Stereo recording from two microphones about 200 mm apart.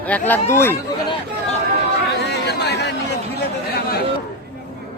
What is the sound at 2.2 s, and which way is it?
Chatter, 55° left (ahead or behind).